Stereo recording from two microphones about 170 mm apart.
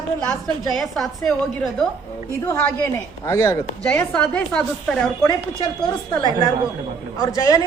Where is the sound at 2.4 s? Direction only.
15° left (ahead or behind).